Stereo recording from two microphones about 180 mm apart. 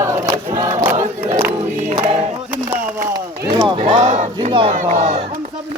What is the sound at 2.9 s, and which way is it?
Speech, 25° right (ahead or behind).